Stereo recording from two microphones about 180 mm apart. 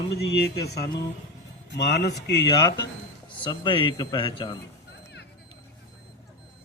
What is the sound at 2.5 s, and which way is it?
Mantra, 20° left (ahead or behind).